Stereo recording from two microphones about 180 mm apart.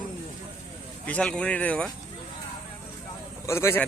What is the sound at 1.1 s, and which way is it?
Speech, 5° left (ahead or behind).